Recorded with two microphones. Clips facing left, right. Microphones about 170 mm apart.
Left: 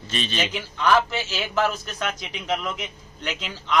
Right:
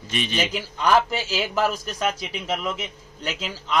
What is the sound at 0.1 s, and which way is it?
Speech, 15° right (ahead or behind).